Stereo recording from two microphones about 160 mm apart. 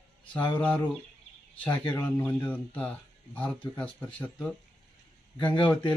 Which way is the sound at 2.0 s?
10° left (ahead or behind).